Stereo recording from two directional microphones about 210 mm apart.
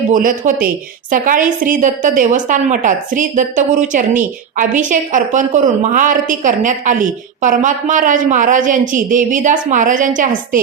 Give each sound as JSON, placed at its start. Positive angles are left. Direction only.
{"t": 0.1, "sound": "a woman's voice", "side_deg": -40}